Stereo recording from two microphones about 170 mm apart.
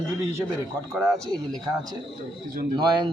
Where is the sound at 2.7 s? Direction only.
25° right (ahead or behind).